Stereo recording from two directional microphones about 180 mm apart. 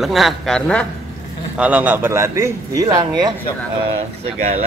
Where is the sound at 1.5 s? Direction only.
10° right (ahead or behind).